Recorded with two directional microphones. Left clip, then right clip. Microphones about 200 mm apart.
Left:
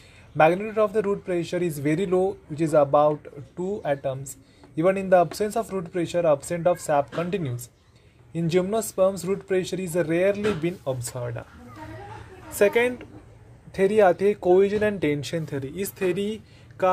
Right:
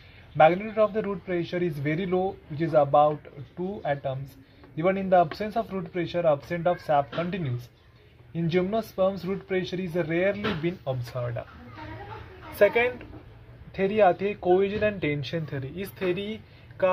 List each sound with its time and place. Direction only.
0.4 s speech: 50° left (ahead or behind)
12.5 s speech: 45° left (ahead or behind)